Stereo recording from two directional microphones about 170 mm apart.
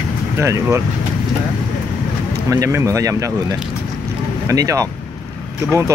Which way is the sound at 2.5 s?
20° right (ahead or behind).